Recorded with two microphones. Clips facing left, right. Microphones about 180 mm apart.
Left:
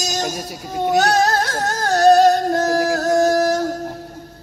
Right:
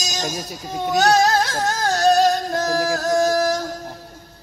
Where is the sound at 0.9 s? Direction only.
60° left (ahead or behind).